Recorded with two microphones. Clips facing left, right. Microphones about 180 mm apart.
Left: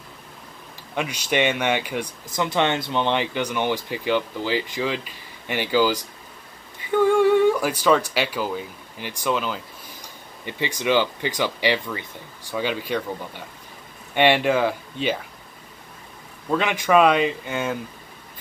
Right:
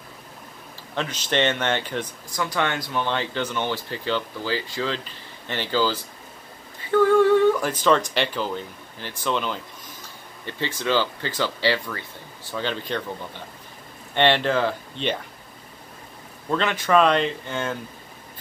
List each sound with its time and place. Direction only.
0.9 s speech: 10° left (ahead or behind)
2.3 s speech: 25° left (ahead or behind); by 9.6 s 5° left (ahead or behind)
10.0 s speech: 15° left (ahead or behind)
14.1 s speech: 10° left (ahead or behind)
16.4 s speech: 10° left (ahead or behind)